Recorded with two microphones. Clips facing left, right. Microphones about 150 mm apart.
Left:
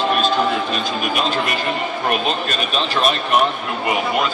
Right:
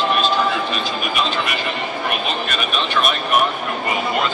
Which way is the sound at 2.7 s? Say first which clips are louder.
Left 2 dB; 35° left (ahead or behind).